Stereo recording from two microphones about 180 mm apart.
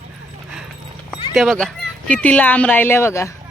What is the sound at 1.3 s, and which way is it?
Speech, centre (ahead or behind).